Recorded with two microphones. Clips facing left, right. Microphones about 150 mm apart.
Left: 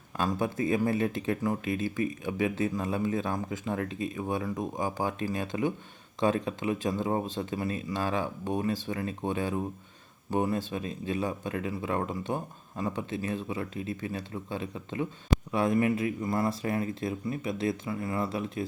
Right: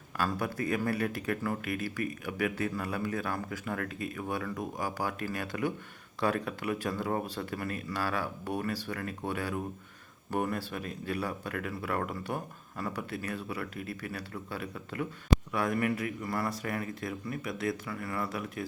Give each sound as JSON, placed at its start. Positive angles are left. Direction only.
{"t": 0.2, "sound": "speech", "side_deg": 20}